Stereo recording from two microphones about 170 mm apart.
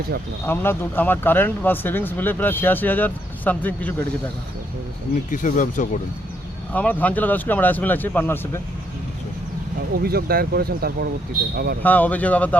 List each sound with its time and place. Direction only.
0.4 s speech: 10° left (ahead or behind)
5.3 s speech: 50° left (ahead or behind)
6.7 s speech: 10° left (ahead or behind)
10.0 s speech: 65° right (ahead or behind)
11.8 s speech: 10° left (ahead or behind)